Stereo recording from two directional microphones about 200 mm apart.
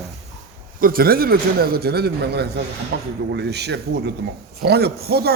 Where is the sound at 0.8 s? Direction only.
45° right (ahead or behind).